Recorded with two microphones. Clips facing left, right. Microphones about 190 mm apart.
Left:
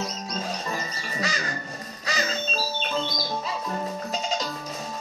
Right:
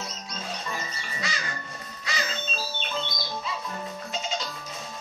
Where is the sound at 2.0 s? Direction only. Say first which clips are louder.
Left 4 dB; 40° left (ahead or behind).